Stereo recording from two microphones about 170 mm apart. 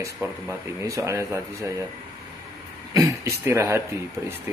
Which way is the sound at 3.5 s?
15° right (ahead or behind).